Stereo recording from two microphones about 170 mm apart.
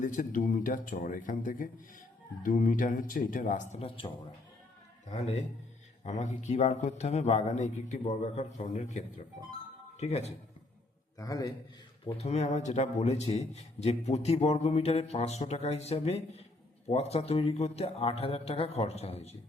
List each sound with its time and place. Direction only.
0.0 s a man's voice: 50° left (ahead or behind)
11.2 s a man's voice: 20° left (ahead or behind)
12.1 s a man's voice: 40° left (ahead or behind)